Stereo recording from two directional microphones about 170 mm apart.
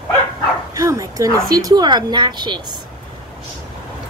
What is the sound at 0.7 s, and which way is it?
Bow-wow, 20° right (ahead or behind).